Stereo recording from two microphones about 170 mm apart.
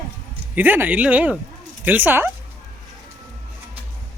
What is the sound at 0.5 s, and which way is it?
Speech, 10° right (ahead or behind).